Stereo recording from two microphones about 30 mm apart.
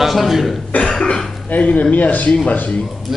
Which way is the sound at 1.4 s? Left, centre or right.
Left.